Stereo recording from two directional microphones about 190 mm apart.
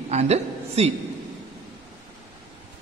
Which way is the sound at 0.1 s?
35° right (ahead or behind).